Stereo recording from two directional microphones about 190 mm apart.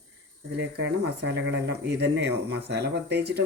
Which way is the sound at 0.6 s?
65° right (ahead or behind).